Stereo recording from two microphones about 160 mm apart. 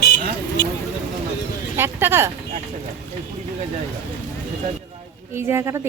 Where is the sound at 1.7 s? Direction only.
15° right (ahead or behind).